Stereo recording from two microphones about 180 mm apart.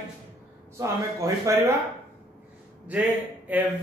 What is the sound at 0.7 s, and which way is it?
Speech, 15° right (ahead or behind).